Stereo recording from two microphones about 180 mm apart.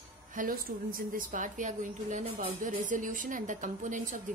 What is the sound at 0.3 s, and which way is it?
A woman's voice, 50° right (ahead or behind).